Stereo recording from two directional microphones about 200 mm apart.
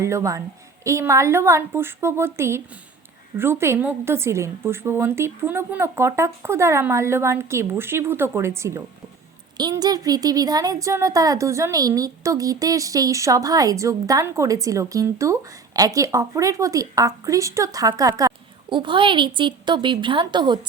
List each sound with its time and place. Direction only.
0.0 s a woman's voice: 15° right (ahead or behind)